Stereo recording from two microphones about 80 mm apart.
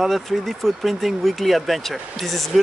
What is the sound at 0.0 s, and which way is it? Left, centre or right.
Speech, centre.